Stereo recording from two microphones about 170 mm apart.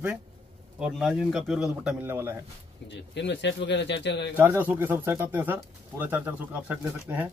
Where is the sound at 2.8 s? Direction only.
90° left.